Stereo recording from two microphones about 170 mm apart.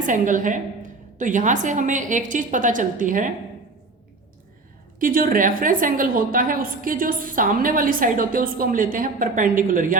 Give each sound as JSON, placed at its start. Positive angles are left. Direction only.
{"t": 0.1, "sound": "a woman's voice", "side_deg": -50}
{"t": 4.9, "sound": "a woman's voice", "side_deg": -55}